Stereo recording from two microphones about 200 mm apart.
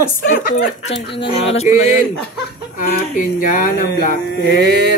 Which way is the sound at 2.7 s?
40° left (ahead or behind).